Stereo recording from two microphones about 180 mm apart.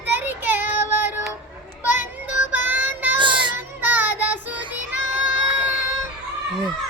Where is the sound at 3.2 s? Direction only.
25° right (ahead or behind).